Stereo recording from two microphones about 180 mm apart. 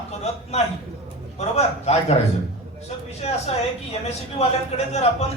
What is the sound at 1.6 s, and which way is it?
Speech, 35° left (ahead or behind).